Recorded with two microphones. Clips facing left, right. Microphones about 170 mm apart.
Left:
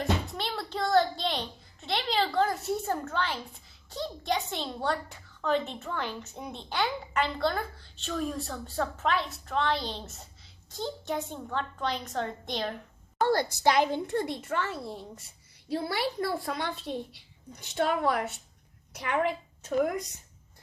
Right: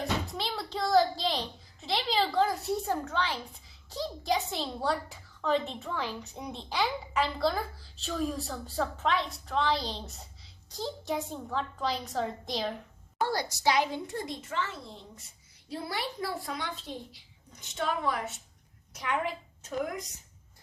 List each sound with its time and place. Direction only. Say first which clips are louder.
0.0 s a child's voice: left 2 dB; centre (ahead or behind)
13.2 s speech: left 4 dB; 55° left (ahead or behind)